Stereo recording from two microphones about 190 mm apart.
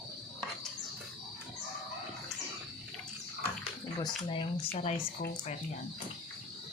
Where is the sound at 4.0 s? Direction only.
25° left (ahead or behind).